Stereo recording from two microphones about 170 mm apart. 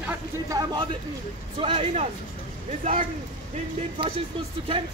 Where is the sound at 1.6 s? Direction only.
35° right (ahead or behind).